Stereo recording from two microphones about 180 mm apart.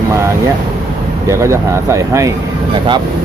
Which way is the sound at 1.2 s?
15° right (ahead or behind).